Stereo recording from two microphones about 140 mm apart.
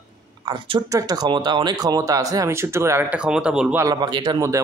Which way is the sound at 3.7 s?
25° right (ahead or behind).